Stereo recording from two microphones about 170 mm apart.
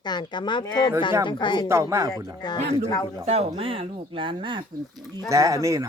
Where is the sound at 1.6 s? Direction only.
15° right (ahead or behind).